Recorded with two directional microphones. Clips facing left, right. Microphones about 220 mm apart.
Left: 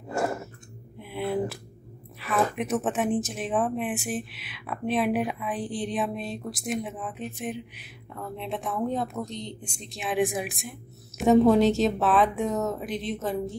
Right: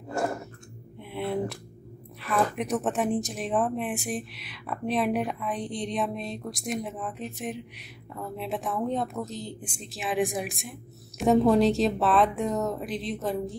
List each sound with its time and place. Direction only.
0.2 s dog: 5° left (ahead or behind)
0.9 s a sound: centre (ahead or behind)
2.1 s speech: centre (ahead or behind)